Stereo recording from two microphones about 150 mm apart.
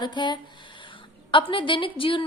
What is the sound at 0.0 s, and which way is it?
Speech, 30° left (ahead or behind).